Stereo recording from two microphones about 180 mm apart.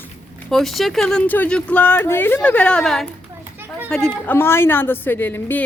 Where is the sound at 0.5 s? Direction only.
Centre (ahead or behind).